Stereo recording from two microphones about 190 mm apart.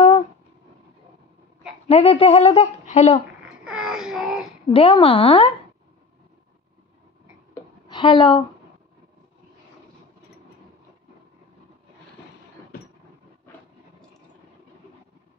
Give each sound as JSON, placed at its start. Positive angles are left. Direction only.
{"t": 1.9, "sound": "a child's voice", "side_deg": 30}
{"t": 3.6, "sound": "wail", "side_deg": -5}
{"t": 4.7, "sound": "a woman's voice", "side_deg": 30}
{"t": 7.9, "sound": "a woman's voice", "side_deg": 25}